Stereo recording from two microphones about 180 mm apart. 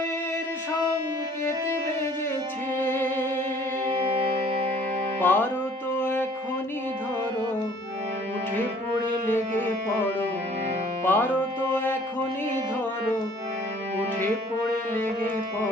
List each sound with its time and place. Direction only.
2.7 s music: 10° left (ahead or behind)
4.3 s music: 30° right (ahead or behind)
5.2 s music: 10° left (ahead or behind)
11.0 s music: 10° left (ahead or behind)